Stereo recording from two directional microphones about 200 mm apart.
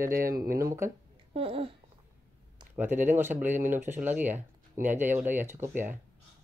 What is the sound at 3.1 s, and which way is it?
Speech, 10° right (ahead or behind).